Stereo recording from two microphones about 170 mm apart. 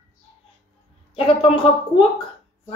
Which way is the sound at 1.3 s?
35° left (ahead or behind).